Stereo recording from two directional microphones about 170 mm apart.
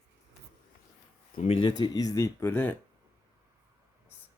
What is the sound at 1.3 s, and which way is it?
Speech, 35° left (ahead or behind).